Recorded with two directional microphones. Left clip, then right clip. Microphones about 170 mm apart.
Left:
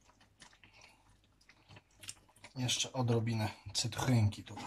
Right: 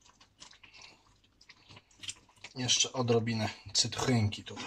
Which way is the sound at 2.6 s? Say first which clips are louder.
Right 6 dB; 25° right (ahead or behind).